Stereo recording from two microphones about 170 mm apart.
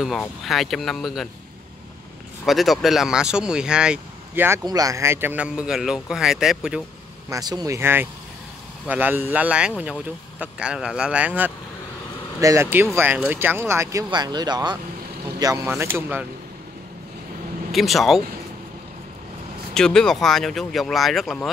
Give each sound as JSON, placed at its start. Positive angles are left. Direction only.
{"t": 0.0, "sound": "a man's voice", "side_deg": 0}
{"t": 2.4, "sound": "a man's voice", "side_deg": 0}
{"t": 4.6, "sound": "a man's voice", "side_deg": -20}
{"t": 7.2, "sound": "a man's voice", "side_deg": -20}
{"t": 17.7, "sound": "a man's voice", "side_deg": 0}
{"t": 19.7, "sound": "a man's voice", "side_deg": 5}